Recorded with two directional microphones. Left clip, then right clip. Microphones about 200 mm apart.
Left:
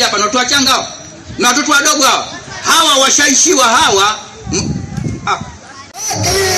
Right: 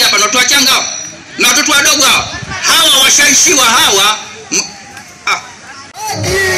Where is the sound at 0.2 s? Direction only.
40° left (ahead or behind).